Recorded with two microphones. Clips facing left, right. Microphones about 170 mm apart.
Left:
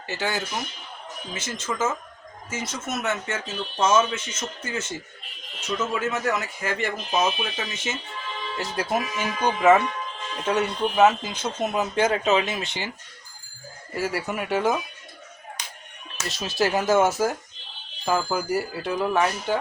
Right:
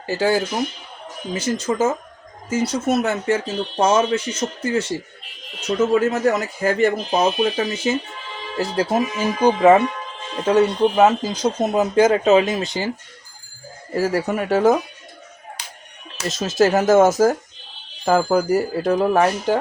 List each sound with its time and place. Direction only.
0.0 s speech: 35° right (ahead or behind)
13.9 s speech: 40° right (ahead or behind)
16.1 s speech: 40° right (ahead or behind)